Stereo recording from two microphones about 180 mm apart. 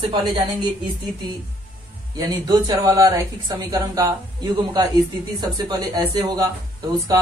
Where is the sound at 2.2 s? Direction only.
20° right (ahead or behind).